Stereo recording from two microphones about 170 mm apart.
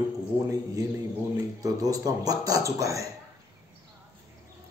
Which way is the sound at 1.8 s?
20° right (ahead or behind).